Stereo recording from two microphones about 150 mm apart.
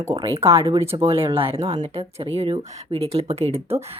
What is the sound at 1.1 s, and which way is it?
Speech, 40° right (ahead or behind).